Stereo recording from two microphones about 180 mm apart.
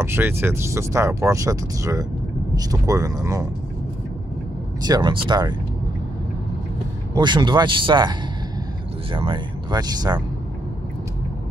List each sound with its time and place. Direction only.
0.0 s speech: 10° right (ahead or behind)
4.8 s speech: 25° right (ahead or behind)
7.2 s speech: 25° right (ahead or behind)